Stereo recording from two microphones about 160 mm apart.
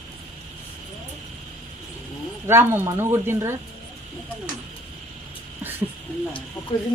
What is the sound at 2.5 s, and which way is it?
Speech, 15° right (ahead or behind).